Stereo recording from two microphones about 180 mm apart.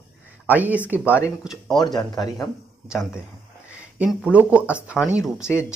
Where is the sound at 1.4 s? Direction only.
Centre (ahead or behind).